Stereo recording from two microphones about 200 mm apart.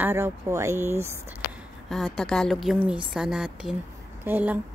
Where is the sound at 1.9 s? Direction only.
Centre (ahead or behind).